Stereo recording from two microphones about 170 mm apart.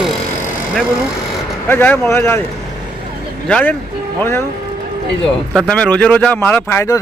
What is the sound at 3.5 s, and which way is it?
Speech, 10° left (ahead or behind).